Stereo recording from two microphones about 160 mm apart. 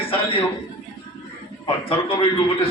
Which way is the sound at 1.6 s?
35° left (ahead or behind).